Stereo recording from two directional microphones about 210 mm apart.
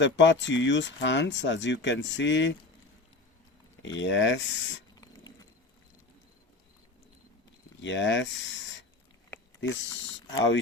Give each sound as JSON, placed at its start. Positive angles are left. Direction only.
{"t": 0.0, "sound": "speech", "side_deg": 60}
{"t": 3.8, "sound": "speech", "side_deg": 60}
{"t": 7.8, "sound": "speech", "side_deg": 60}
{"t": 10.3, "sound": "speech", "side_deg": 60}